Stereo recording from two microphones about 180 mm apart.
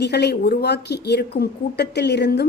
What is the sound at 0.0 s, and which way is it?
A woman's voice, 70° left (ahead or behind).